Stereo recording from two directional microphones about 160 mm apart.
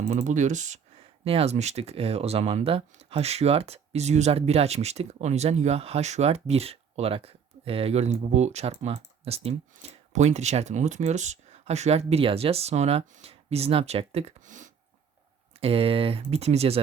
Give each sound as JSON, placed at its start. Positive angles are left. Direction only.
{"t": 0.1, "sound": "speech", "side_deg": -50}
{"t": 15.6, "sound": "speech", "side_deg": -35}